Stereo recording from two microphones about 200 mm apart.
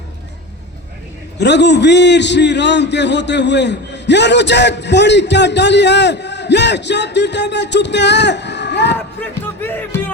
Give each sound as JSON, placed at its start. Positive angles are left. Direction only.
{"t": 1.4, "sound": "a man's voice", "side_deg": 60}
{"t": 9.4, "sound": "music", "side_deg": 10}